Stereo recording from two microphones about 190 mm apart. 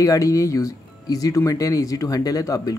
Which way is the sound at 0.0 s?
20° left (ahead or behind).